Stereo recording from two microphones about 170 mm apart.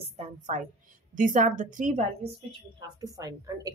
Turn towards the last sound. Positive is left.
turn(degrees=-20)  # may be behind; listen again after turning